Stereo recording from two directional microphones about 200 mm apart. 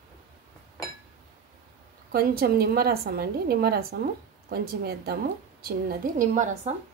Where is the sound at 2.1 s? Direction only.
50° right (ahead or behind).